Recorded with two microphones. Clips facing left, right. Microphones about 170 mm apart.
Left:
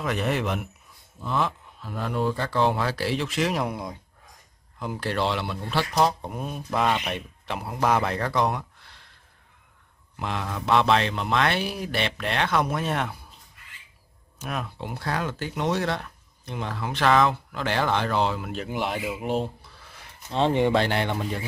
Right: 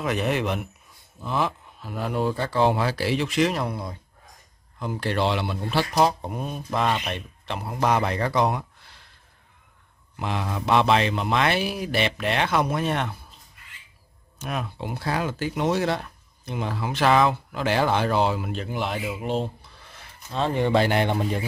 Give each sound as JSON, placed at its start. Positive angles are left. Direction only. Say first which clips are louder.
{"t": 0.0, "sound": "speech", "louder": "right 2 dB", "side_deg": -5}
{"t": 3.5, "sound": "speech", "louder": "even", "side_deg": 15}
{"t": 4.7, "sound": "speech", "louder": "right 2 dB", "side_deg": 5}
{"t": 10.1, "sound": "speech", "louder": "right 2 dB", "side_deg": -5}
{"t": 14.4, "sound": "speech", "louder": "right 2 dB", "side_deg": 0}
{"t": 18.5, "sound": "speech", "louder": "even", "side_deg": 5}
{"t": 20.2, "sound": "speech", "louder": "left 2 dB", "side_deg": 20}
{"t": 20.7, "sound": "speech", "louder": "right 3 dB", "side_deg": -10}